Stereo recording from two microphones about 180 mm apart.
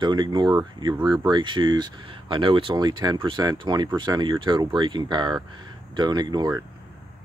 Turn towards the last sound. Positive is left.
turn(degrees=-20)  # may be behind; listen again after turning